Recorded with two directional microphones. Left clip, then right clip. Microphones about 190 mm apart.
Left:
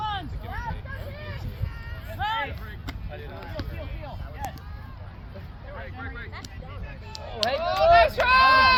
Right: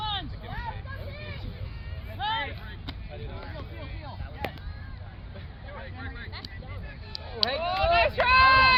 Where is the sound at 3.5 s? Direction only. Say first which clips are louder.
Left 5 dB; 40° left (ahead or behind).